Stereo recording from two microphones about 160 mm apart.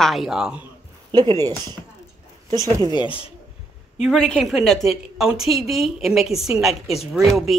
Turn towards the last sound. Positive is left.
turn(degrees=0)  # may be behind; listen again after turning